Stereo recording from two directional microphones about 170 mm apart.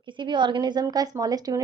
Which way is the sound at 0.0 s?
30° right (ahead or behind).